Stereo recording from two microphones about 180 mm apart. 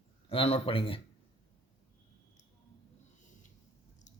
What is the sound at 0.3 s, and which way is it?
Speech, 30° left (ahead or behind).